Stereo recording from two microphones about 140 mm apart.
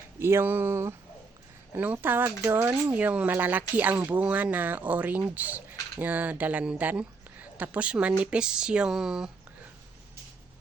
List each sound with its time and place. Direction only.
0.2 s speech: 15° right (ahead or behind)